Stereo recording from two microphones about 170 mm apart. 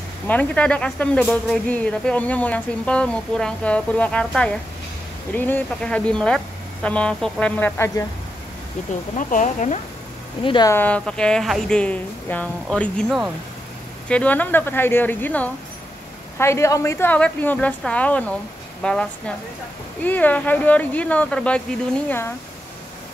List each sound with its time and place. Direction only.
0.3 s speech: 10° left (ahead or behind)
9.3 s speech: 45° left (ahead or behind)
10.4 s speech: 30° left (ahead or behind)
10.7 s speech: 10° left (ahead or behind)